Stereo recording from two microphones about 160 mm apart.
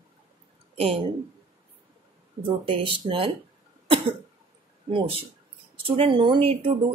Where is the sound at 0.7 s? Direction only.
35° right (ahead or behind).